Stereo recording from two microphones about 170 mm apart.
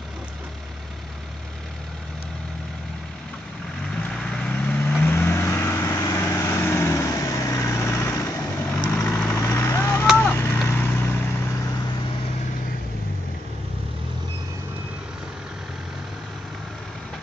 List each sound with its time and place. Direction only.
4.0 s vehicle: 5° left (ahead or behind)